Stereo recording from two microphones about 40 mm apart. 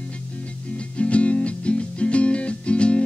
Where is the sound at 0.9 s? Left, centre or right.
Left.